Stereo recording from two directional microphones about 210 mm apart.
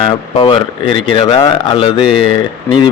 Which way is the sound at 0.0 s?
25° left (ahead or behind).